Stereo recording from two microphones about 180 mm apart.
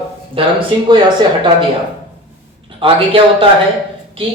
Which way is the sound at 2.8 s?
30° right (ahead or behind).